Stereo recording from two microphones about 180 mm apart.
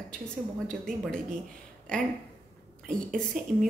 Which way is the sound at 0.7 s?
5° left (ahead or behind).